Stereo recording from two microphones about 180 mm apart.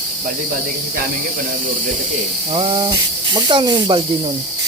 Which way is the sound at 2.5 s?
25° right (ahead or behind).